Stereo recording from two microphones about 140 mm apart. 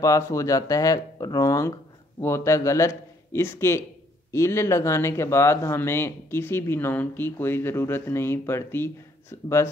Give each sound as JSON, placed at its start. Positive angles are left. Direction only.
{"t": 0.0, "sound": "speech", "side_deg": 25}